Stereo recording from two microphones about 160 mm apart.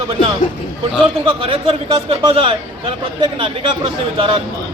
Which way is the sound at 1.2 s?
35° right (ahead or behind).